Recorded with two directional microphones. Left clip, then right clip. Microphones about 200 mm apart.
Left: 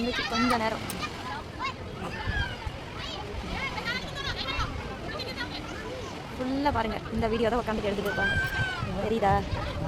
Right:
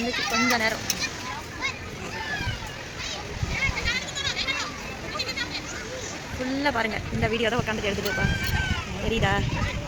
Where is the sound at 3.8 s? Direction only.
55° left (ahead or behind).